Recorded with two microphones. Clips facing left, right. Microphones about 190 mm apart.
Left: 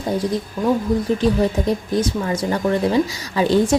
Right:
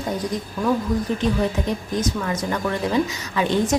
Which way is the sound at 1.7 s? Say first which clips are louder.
Left 4 dB; 30° left (ahead or behind).